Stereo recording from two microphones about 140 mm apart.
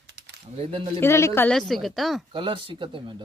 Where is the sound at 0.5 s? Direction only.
45° right (ahead or behind).